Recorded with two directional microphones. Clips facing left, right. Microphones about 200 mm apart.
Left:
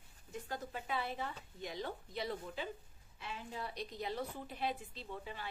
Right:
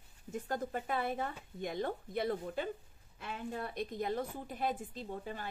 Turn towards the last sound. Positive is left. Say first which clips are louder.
# right 4 dB
turn(degrees=-45)  # may be behind; listen again after turning